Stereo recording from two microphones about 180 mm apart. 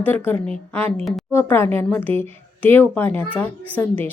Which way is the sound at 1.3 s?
15° left (ahead or behind).